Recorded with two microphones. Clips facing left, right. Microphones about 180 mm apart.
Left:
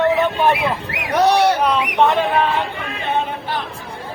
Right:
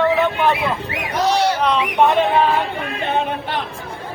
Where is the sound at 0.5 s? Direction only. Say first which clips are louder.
Left 1 dB; 70° left (ahead or behind).